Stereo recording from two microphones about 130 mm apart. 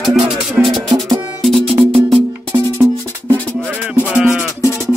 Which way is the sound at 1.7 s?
40° right (ahead or behind).